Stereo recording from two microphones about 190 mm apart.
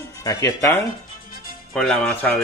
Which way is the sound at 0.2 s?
20° left (ahead or behind).